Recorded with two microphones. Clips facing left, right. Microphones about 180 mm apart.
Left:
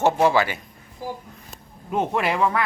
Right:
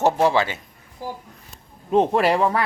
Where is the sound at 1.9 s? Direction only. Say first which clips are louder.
Right 6 dB; 35° right (ahead or behind).